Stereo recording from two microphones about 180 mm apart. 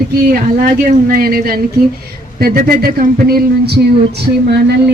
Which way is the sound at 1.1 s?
55° right (ahead or behind).